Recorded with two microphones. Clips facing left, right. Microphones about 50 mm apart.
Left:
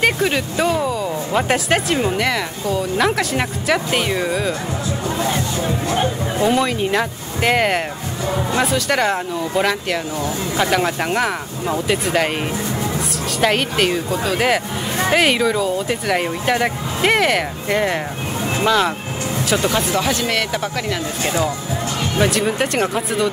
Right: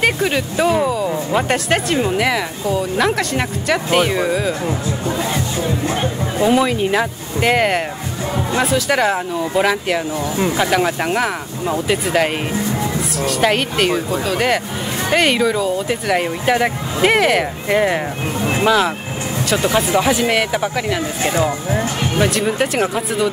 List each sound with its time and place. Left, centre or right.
0.0 s speech: centre
5.9 s speech: centre
19.9 s speech: centre
21.3 s speech: right
22.2 s speech: centre